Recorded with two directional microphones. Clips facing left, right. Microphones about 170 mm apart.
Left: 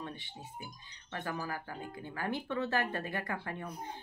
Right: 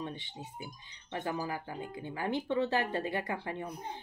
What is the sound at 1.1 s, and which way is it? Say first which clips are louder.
Speech: right 3 dB; 20° right (ahead or behind).